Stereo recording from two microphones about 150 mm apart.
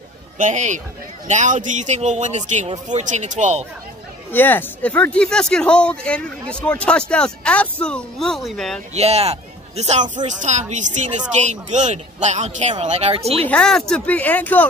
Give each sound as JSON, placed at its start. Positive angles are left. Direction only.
{"t": 0.4, "sound": "a man's voice", "side_deg": -55}
{"t": 4.3, "sound": "speech", "side_deg": 15}
{"t": 8.9, "sound": "a man's voice", "side_deg": -45}
{"t": 13.5, "sound": "speech", "side_deg": 5}